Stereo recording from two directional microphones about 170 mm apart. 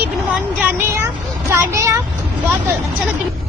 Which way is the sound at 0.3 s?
10° right (ahead or behind).